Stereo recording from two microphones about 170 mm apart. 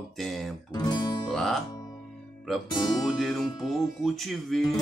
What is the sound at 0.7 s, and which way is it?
Speech, 25° left (ahead or behind).